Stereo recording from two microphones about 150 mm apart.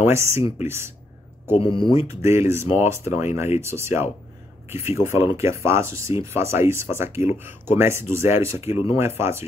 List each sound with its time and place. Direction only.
0.0 s speech: 15° right (ahead or behind)
1.5 s speech: 35° left (ahead or behind)
2.0 s speech: 20° right (ahead or behind)